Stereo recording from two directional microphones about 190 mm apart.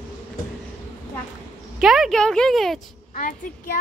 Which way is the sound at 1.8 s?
Centre (ahead or behind).